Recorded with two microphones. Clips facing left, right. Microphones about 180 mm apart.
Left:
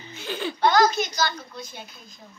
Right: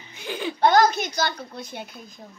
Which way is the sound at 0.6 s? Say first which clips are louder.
Right 2 dB; 55° right (ahead or behind).